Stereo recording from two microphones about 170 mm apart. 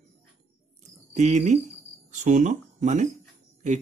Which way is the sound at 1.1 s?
45° right (ahead or behind).